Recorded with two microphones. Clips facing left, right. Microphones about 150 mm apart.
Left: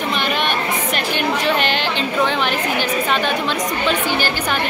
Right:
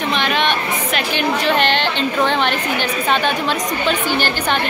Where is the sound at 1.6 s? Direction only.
5° left (ahead or behind).